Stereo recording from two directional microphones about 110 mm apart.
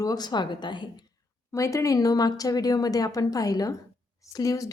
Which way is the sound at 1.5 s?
30° left (ahead or behind).